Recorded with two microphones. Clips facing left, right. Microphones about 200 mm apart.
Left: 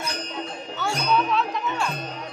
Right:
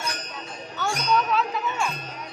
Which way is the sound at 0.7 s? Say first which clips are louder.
Left 1 dB; centre (ahead or behind).